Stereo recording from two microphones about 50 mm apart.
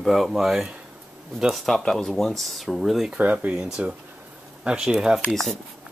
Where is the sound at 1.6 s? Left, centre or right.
Centre.